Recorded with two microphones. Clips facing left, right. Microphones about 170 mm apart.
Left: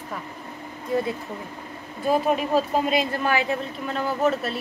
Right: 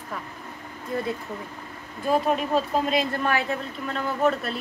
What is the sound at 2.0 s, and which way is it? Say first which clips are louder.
A woman's voice: left 1 dB; 5° left (ahead or behind).